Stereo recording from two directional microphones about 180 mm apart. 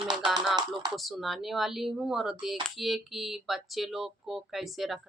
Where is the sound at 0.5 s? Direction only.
20° right (ahead or behind).